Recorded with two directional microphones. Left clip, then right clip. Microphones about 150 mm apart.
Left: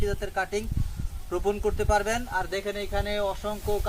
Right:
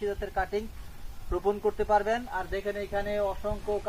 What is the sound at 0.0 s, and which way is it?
Speech, 25° left (ahead or behind).